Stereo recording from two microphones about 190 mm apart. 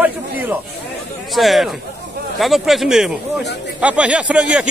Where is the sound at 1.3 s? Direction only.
Centre (ahead or behind).